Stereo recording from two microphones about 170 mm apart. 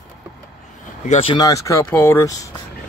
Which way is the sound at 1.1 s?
30° left (ahead or behind).